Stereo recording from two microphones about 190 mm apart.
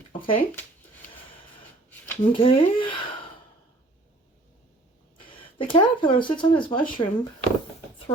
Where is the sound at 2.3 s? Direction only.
25° left (ahead or behind).